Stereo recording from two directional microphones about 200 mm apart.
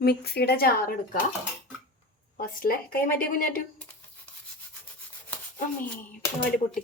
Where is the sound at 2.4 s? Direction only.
45° left (ahead or behind).